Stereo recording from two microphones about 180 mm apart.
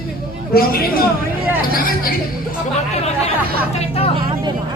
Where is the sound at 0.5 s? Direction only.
55° left (ahead or behind).